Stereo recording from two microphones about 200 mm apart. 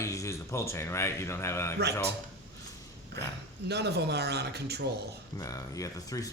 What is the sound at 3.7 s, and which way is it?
A man's voice, 55° right (ahead or behind).